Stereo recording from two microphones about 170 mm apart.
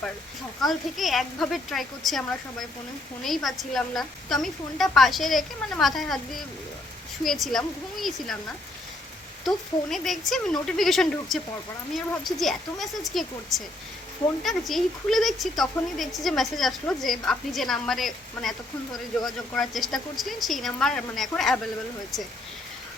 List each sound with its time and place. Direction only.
0.6 s speech: centre (ahead or behind)
7.3 s speech: centre (ahead or behind)
9.9 s speech: centre (ahead or behind)
14.4 s speech: centre (ahead or behind)